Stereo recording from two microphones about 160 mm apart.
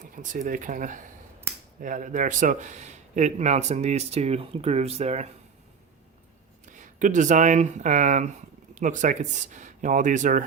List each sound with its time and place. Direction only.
0.2 s a man's voice: 55° right (ahead or behind)
6.7 s speech: 50° right (ahead or behind)